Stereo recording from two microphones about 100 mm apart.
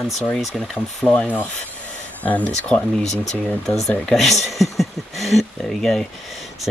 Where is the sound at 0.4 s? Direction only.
Centre (ahead or behind).